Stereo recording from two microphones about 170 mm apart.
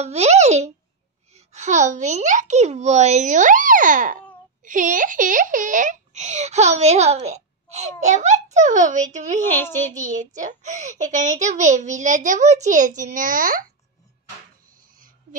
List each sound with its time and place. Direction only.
0.0 s a child's voice: 40° right (ahead or behind)
9.4 s a child's voice: 10° left (ahead or behind)
9.9 s a child's voice: 45° right (ahead or behind)